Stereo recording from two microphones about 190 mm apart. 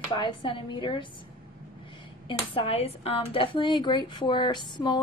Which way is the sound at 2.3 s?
30° left (ahead or behind).